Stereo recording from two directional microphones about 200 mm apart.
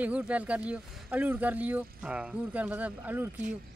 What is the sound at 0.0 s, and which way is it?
Speech, 5° right (ahead or behind).